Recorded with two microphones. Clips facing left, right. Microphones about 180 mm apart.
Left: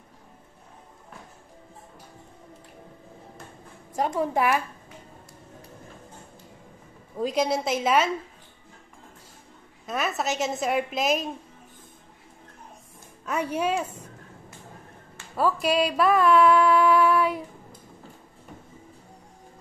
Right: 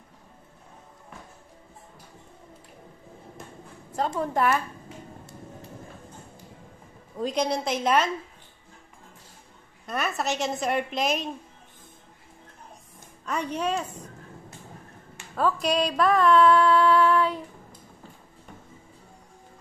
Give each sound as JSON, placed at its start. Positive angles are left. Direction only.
{"t": 3.9, "sound": "a woman's voice", "side_deg": 10}
{"t": 7.2, "sound": "a woman's voice", "side_deg": 5}
{"t": 9.8, "sound": "a woman's voice", "side_deg": 0}
{"t": 13.2, "sound": "a woman's voice", "side_deg": 5}
{"t": 15.6, "sound": "female singing", "side_deg": 5}